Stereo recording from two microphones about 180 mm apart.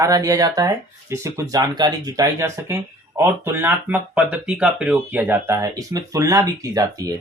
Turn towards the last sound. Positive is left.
turn(degrees=-20)  # may be behind; listen again after turning